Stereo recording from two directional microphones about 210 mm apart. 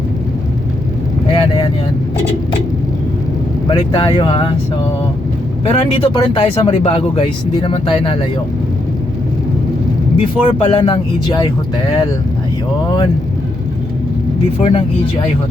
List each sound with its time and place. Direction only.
1.3 s speech: 20° left (ahead or behind)
3.7 s speech: 20° left (ahead or behind)
5.6 s speech: 25° left (ahead or behind)
10.2 s speech: 25° left (ahead or behind)
14.6 s speech: 25° left (ahead or behind)